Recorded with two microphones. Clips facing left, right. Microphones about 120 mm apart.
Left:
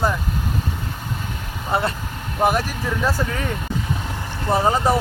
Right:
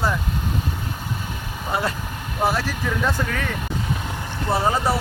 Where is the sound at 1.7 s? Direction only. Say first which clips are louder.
Left 3 dB; 25° left (ahead or behind).